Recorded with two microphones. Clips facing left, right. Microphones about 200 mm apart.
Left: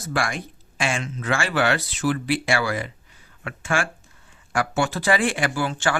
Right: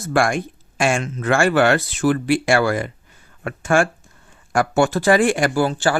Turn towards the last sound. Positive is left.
turn(degrees=-35)  # may be behind; listen again after turning